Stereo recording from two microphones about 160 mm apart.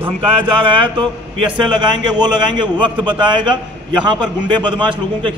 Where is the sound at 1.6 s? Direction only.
30° right (ahead or behind).